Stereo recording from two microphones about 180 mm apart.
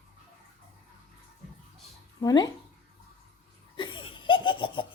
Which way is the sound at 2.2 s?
20° left (ahead or behind).